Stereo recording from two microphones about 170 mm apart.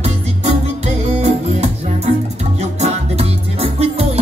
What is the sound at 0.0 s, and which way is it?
Music, 40° right (ahead or behind).